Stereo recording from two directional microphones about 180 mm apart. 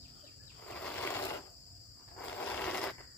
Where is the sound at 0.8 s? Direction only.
10° left (ahead or behind).